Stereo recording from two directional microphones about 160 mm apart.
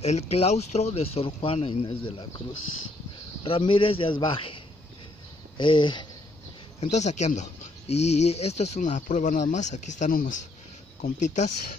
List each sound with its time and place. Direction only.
0.0 s speech: 40° left (ahead or behind)
3.4 s speech: 35° left (ahead or behind)
5.6 s speech: 30° left (ahead or behind)
6.8 s speech: 45° left (ahead or behind)